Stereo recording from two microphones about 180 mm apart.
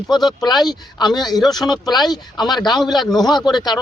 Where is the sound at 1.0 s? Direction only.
25° left (ahead or behind).